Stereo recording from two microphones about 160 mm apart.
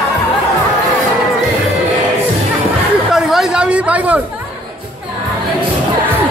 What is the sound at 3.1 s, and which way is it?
Chatter, 5° right (ahead or behind).